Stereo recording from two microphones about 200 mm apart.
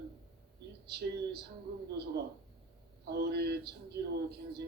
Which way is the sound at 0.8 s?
55° right (ahead or behind).